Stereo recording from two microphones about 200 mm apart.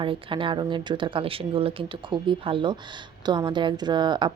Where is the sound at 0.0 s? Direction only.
25° right (ahead or behind).